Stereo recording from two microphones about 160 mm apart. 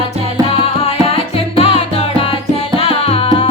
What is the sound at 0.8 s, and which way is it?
Music, 35° left (ahead or behind).